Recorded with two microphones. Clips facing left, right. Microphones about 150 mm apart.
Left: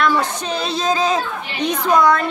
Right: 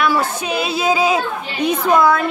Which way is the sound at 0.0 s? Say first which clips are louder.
Even; 5° right (ahead or behind).